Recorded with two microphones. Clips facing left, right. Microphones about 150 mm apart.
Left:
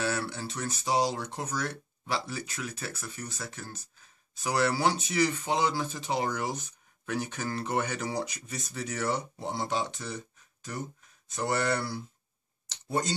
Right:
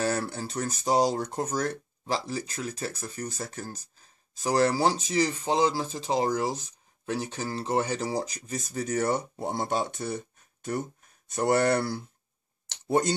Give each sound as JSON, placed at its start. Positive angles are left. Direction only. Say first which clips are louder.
{"t": 0.0, "sound": "speech", "louder": "right 3 dB", "side_deg": -40}